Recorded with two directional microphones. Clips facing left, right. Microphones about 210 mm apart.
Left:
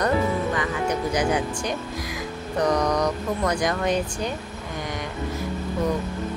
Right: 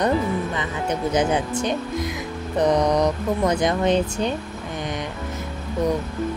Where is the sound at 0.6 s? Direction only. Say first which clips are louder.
Even; 20° right (ahead or behind).